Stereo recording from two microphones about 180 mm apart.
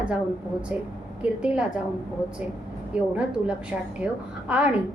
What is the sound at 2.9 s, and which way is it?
A woman's voice, 5° right (ahead or behind).